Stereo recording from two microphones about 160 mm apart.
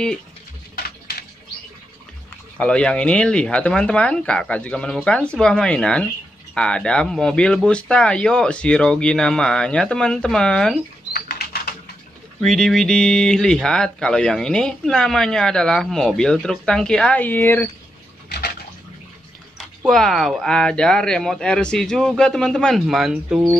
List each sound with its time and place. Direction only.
2.6 s speech: 5° left (ahead or behind)
11.1 s bird flight: 80° left
12.4 s speech: centre (ahead or behind)
19.8 s speech: centre (ahead or behind)